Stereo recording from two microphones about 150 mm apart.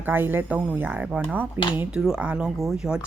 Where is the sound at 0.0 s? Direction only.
15° right (ahead or behind).